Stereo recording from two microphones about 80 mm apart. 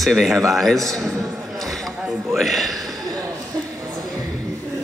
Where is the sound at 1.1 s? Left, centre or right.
Centre.